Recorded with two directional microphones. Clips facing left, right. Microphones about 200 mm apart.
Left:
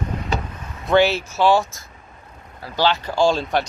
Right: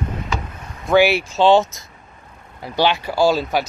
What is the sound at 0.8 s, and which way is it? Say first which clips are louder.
Speech: right 2 dB; 10° right (ahead or behind).